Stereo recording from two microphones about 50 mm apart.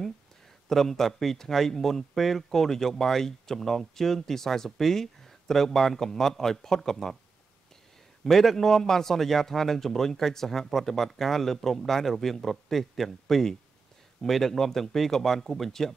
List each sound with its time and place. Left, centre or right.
0.7 s speech: centre
8.2 s speech: centre